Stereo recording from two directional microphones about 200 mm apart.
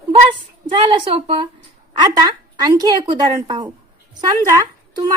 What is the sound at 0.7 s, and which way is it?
A woman's voice, 25° right (ahead or behind).